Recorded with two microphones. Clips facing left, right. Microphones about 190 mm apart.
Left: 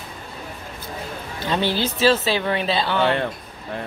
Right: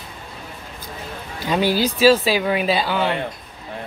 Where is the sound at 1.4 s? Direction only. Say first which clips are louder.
Right 3 dB; 10° right (ahead or behind).